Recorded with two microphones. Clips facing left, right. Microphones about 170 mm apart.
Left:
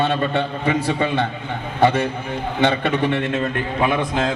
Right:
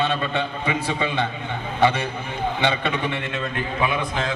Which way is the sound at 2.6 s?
45° left (ahead or behind).